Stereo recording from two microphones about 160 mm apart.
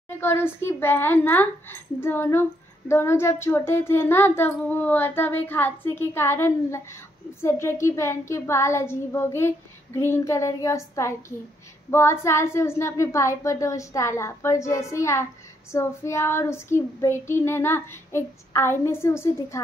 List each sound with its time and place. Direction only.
0.2 s speech: 15° left (ahead or behind)